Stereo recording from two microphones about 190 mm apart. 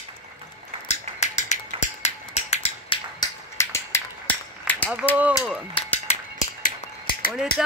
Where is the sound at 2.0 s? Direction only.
35° left (ahead or behind).